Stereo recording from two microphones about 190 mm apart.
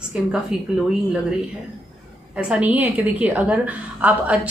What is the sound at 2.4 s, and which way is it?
A woman's voice, 5° right (ahead or behind).